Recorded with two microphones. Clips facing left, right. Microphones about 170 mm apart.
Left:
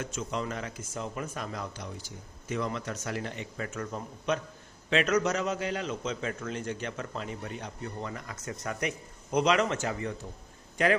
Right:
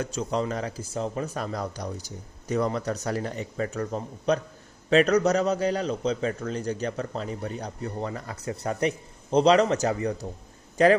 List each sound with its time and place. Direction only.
0.0 s a man's voice: 35° right (ahead or behind)